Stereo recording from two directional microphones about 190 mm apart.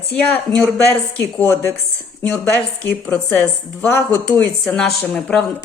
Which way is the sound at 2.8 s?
10° left (ahead or behind).